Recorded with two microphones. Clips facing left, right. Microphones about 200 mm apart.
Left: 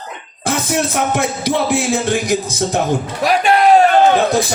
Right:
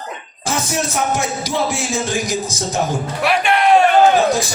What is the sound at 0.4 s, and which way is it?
Music, 60° left (ahead or behind).